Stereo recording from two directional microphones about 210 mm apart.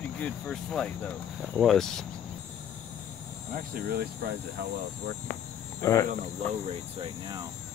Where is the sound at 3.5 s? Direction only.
45° right (ahead or behind).